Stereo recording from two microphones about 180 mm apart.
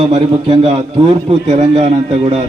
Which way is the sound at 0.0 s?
30° right (ahead or behind).